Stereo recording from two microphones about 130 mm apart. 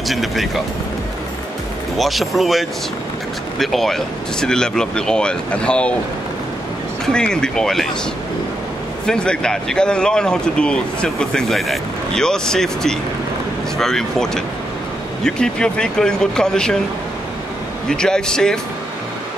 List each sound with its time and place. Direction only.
0.1 s speech: centre (ahead or behind)
2.0 s speech: centre (ahead or behind)
7.1 s speech: 5° left (ahead or behind)
9.0 s speech: 5° left (ahead or behind)
17.8 s speech: 5° left (ahead or behind)